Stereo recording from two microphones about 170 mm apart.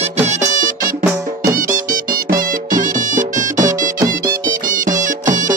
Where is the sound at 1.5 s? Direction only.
55° right (ahead or behind).